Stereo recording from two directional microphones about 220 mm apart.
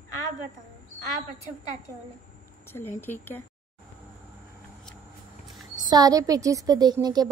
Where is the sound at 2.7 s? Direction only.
10° left (ahead or behind).